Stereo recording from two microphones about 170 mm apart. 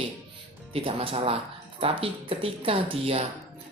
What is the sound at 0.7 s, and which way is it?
Speech, 35° right (ahead or behind).